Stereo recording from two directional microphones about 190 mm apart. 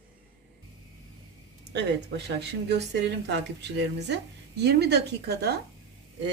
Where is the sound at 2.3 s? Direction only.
60° right (ahead or behind).